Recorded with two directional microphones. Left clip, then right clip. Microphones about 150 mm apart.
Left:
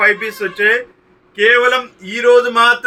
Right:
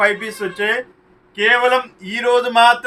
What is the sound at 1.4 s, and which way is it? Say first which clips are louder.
Speech: left 3 dB; 90° right.